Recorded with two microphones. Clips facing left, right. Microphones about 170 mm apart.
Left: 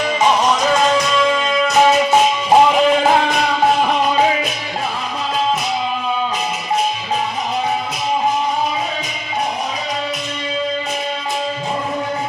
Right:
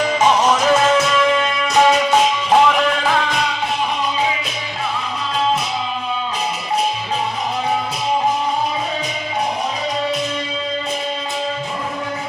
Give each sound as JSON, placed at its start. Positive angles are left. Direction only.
{"t": 0.1, "sound": "music", "side_deg": 10}
{"t": 0.4, "sound": "music", "side_deg": -10}
{"t": 2.6, "sound": "music", "side_deg": 20}
{"t": 3.0, "sound": "music", "side_deg": 45}
{"t": 3.8, "sound": "music", "side_deg": 55}